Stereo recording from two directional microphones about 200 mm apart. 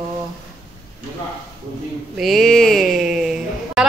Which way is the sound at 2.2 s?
Centre (ahead or behind).